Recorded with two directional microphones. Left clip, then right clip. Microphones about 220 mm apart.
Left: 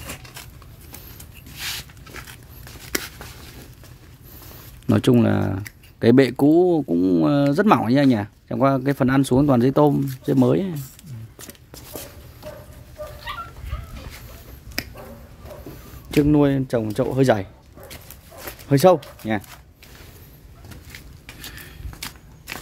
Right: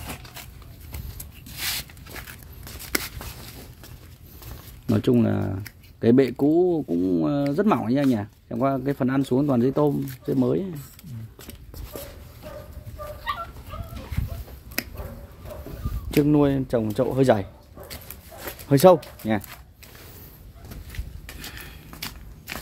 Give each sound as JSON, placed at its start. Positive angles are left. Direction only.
{"t": 1.6, "sound": "dog", "side_deg": -20}
{"t": 4.8, "sound": "speech", "side_deg": 25}
{"t": 14.8, "sound": "finger snapping", "side_deg": -5}
{"t": 16.1, "sound": "speech", "side_deg": 15}
{"t": 21.4, "sound": "biting", "side_deg": -5}